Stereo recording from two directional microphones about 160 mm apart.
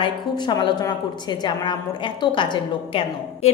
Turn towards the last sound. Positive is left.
turn(degrees=30)  # may be behind; listen again after turning